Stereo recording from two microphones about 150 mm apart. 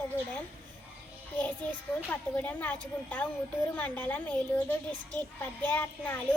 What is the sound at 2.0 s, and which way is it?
Speech, 10° left (ahead or behind).